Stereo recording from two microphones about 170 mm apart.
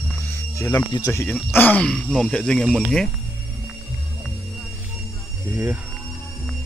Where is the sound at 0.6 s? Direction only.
20° left (ahead or behind); by 3.1 s centre (ahead or behind).